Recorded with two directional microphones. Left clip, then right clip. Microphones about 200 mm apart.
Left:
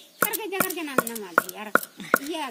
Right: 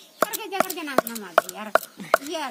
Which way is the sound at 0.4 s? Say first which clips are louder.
Right 2 dB; 40° right (ahead or behind).